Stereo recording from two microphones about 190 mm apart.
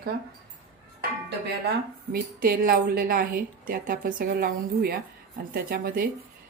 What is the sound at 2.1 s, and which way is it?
A woman's voice, 50° right (ahead or behind).